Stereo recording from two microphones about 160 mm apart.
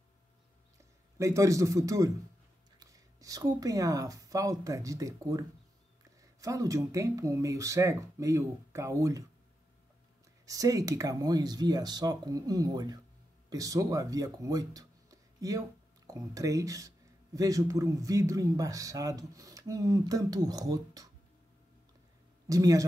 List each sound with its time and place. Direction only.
1.1 s speech: 20° right (ahead or behind)
6.4 s speech: 20° right (ahead or behind)
10.4 s speech: 20° right (ahead or behind)
22.5 s speech: 20° right (ahead or behind)